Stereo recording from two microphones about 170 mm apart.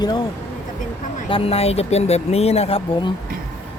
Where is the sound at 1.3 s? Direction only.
35° left (ahead or behind).